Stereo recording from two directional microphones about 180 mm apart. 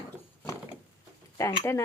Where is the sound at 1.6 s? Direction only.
15° left (ahead or behind).